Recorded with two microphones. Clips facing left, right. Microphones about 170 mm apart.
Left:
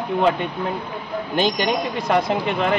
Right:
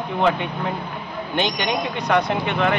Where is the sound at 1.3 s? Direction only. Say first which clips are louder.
Left 2 dB; 40° left (ahead or behind).